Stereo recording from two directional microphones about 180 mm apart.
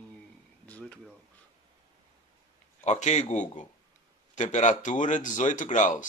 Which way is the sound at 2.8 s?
40° left (ahead or behind).